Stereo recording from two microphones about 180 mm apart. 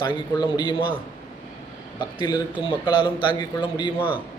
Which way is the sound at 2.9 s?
25° left (ahead or behind).